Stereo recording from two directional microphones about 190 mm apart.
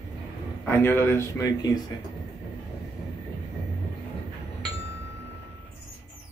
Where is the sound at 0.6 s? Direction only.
10° left (ahead or behind).